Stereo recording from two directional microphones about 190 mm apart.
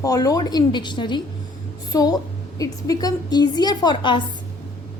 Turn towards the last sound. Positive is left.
turn(degrees=25)  # may be behind; listen again after turning